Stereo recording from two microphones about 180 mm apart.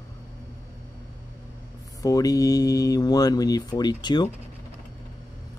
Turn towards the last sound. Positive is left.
turn(degrees=25)  # may be behind; listen again after turning